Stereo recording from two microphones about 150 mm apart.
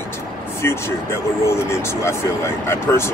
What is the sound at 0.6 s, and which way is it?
Speech, 15° left (ahead or behind).